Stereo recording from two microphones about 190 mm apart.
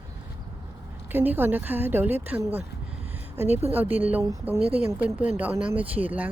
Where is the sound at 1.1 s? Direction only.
10° right (ahead or behind).